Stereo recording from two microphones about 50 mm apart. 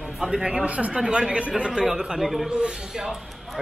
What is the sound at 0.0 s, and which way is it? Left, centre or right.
Speech, centre.